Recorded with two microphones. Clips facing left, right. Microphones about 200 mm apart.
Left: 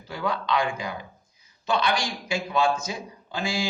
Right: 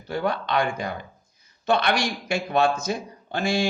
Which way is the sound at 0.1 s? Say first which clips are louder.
Right 2 dB; 60° right (ahead or behind).